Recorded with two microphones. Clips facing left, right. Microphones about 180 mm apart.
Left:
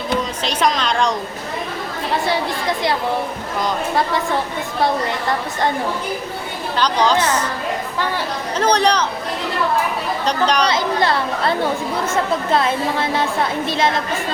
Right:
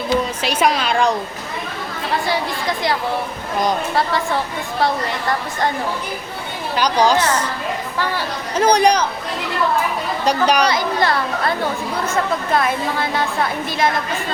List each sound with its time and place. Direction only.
0.4 s a woman's voice: 10° right (ahead or behind)
6.7 s a woman's voice: 10° right (ahead or behind)
8.5 s a woman's voice: 10° right (ahead or behind)
10.2 s a woman's voice: 10° right (ahead or behind)
10.7 s speech: 25° left (ahead or behind)
12.5 s speech: 25° left (ahead or behind)